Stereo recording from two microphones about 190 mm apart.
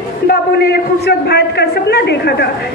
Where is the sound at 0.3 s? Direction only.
60° left (ahead or behind).